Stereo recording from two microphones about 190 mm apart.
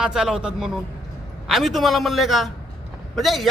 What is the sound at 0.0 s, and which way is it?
A man's voice, 5° right (ahead or behind).